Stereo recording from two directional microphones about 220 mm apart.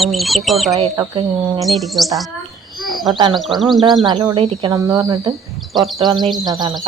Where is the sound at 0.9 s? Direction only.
15° right (ahead or behind).